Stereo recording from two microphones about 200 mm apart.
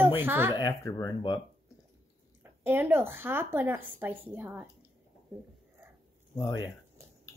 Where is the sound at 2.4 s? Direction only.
10° right (ahead or behind).